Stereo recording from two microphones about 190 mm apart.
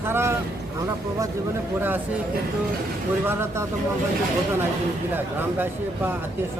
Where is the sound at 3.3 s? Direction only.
10° right (ahead or behind).